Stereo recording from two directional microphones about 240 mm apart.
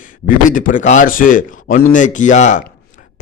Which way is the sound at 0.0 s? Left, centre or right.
Left.